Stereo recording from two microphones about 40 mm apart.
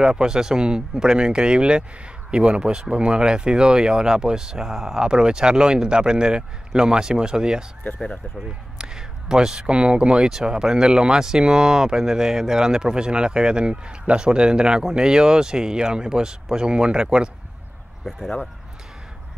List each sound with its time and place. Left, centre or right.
0.0 s speech: centre
8.7 s a sound: centre
9.7 s speech: right